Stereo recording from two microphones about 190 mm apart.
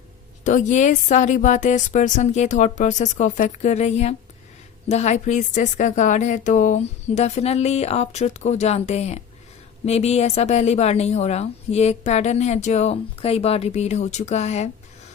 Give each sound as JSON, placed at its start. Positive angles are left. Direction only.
{"t": 0.4, "sound": "a woman's voice", "side_deg": 40}